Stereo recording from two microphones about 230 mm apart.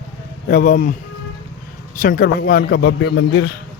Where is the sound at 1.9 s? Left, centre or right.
Left.